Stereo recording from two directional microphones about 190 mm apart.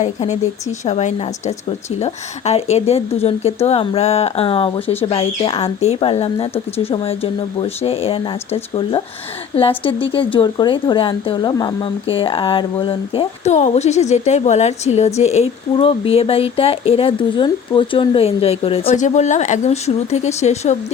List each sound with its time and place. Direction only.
0.0 s a woman's voice: 35° left (ahead or behind)